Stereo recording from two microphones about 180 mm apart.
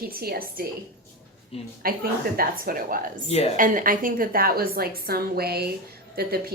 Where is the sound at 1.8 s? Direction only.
55° right (ahead or behind).